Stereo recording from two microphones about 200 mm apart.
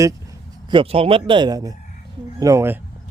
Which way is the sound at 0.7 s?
25° right (ahead or behind).